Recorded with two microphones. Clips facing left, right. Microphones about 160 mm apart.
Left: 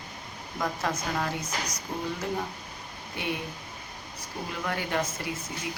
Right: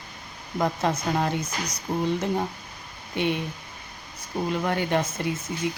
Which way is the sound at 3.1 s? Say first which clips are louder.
Right 7 dB; 25° right (ahead or behind).